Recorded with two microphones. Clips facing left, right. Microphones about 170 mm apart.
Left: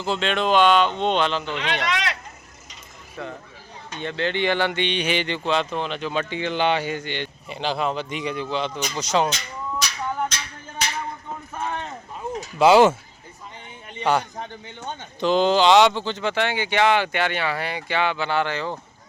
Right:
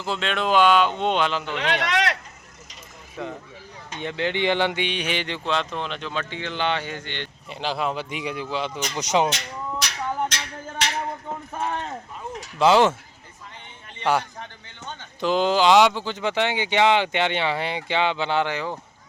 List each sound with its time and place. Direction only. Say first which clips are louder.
0.0 s speech: left 3 dB; centre (ahead or behind)
1.5 s speech: right 2 dB; 55° right (ahead or behind)
3.2 s speech: right 1 dB; 15° right (ahead or behind)
9.3 s music: even; 70° right (ahead or behind)
12.5 s speech: left 3 dB; 5° left (ahead or behind)
15.2 s speech: left 2 dB; 5° right (ahead or behind)